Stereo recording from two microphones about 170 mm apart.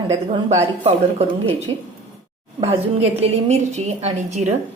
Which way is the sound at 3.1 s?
40° right (ahead or behind).